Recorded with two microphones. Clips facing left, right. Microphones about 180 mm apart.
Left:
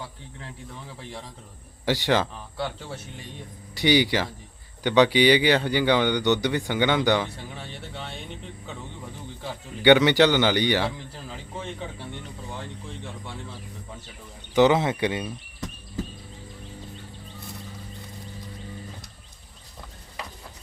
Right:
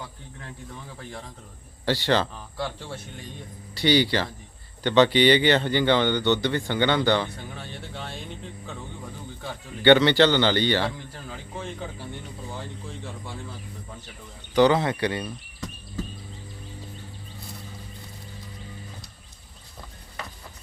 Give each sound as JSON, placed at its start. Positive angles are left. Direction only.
{"t": 1.8, "sound": "a man's voice", "side_deg": 15}
{"t": 2.3, "sound": "speech", "side_deg": 0}
{"t": 3.8, "sound": "a man's voice", "side_deg": 15}
{"t": 9.4, "sound": "a man's voice", "side_deg": 10}
{"t": 14.5, "sound": "speech", "side_deg": 20}